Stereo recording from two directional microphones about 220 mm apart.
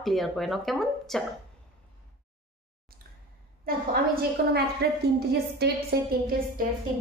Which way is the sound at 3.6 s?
40° right (ahead or behind).